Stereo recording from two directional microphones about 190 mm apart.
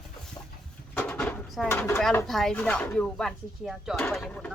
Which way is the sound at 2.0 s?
5° left (ahead or behind).